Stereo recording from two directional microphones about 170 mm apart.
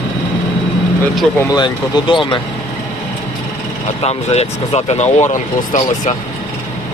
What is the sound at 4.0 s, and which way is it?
Speech, 40° left (ahead or behind).